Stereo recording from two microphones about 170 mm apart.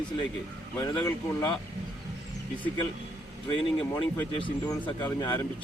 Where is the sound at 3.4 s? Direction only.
25° left (ahead or behind).